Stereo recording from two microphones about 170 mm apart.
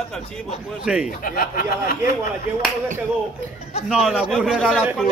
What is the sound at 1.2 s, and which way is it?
Speech, 60° left (ahead or behind).